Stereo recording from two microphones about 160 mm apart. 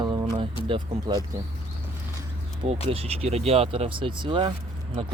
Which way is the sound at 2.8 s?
40° right (ahead or behind).